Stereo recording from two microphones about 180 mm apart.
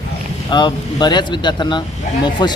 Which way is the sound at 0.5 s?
25° left (ahead or behind).